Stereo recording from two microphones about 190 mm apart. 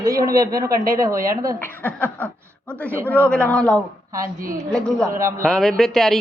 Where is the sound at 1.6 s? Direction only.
10° left (ahead or behind).